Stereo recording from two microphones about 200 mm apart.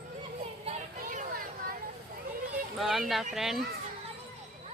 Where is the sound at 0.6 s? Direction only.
40° right (ahead or behind).